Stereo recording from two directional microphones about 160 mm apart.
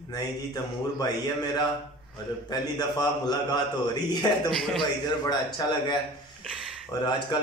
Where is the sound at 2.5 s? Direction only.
25° left (ahead or behind).